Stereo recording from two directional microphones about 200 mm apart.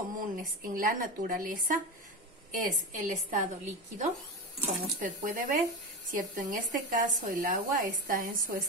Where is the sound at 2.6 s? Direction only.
45° right (ahead or behind).